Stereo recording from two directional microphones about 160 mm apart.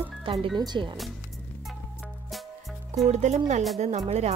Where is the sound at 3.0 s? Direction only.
45° right (ahead or behind).